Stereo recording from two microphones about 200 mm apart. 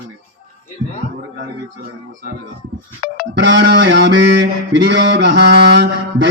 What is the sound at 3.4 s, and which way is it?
Mantra, 60° right (ahead or behind).